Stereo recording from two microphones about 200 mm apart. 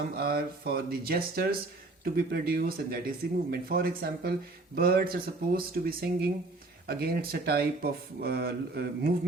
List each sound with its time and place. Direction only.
0.0 s speech: 50° right (ahead or behind)